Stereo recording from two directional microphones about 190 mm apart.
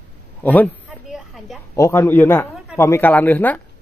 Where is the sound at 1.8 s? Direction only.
15° left (ahead or behind).